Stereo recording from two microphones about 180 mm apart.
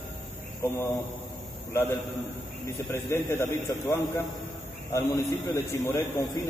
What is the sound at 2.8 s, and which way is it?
A man's voice, 15° left (ahead or behind).